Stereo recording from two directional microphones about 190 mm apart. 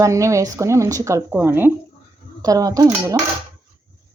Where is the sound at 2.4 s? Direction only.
20° right (ahead or behind).